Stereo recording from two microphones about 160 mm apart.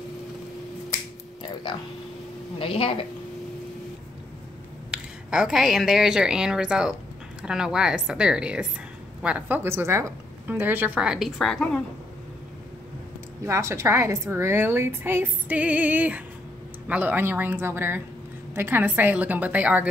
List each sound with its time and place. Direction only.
2.6 s a woman's voice: 35° left (ahead or behind)
4.9 s a woman's voice: 5° right (ahead or behind)
13.5 s a woman's voice: 15° right (ahead or behind)